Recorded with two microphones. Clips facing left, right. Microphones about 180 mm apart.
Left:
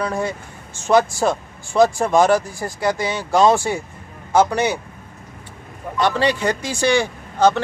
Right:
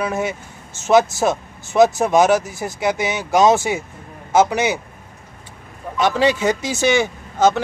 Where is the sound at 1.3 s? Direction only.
20° right (ahead or behind).